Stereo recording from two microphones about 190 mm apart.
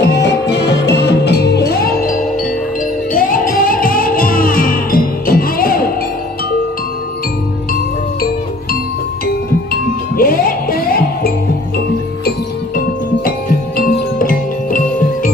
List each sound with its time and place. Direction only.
0.0 s music: 65° left (ahead or behind)
9.7 s music: 50° left (ahead or behind)
13.7 s music: 45° left (ahead or behind)